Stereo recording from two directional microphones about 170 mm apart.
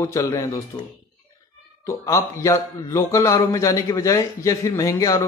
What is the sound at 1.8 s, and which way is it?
A man's voice, 20° left (ahead or behind).